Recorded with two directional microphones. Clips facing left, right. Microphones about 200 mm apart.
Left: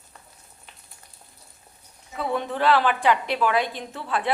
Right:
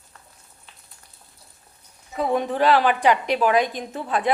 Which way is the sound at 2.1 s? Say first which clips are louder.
Right 4 dB; 15° right (ahead or behind).